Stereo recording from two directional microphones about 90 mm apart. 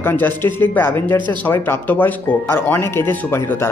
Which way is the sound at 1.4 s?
25° left (ahead or behind).